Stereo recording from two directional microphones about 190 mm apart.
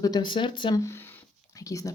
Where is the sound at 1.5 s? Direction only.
20° left (ahead or behind).